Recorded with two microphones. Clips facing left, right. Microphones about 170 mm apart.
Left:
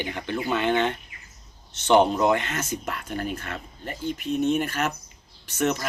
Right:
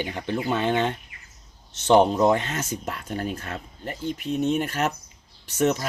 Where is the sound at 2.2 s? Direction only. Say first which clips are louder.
Right 2 dB; 35° right (ahead or behind).